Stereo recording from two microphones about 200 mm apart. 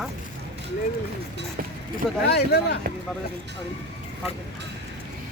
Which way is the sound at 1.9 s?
55° left (ahead or behind).